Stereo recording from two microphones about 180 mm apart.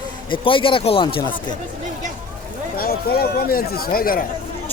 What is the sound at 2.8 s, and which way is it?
Speech, 60° left (ahead or behind).